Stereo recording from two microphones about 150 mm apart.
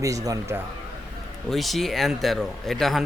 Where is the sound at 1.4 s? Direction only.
Centre (ahead or behind).